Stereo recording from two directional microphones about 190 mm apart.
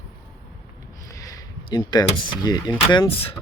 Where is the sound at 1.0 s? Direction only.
15° left (ahead or behind).